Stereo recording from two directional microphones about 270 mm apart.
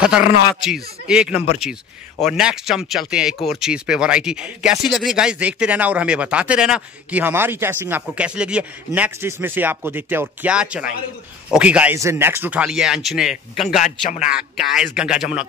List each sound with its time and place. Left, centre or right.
0.7 s speech: centre
13.7 s a man's voice: left
14.3 s speech: centre